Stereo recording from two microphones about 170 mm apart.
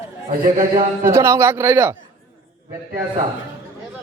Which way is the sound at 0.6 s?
55° right (ahead or behind).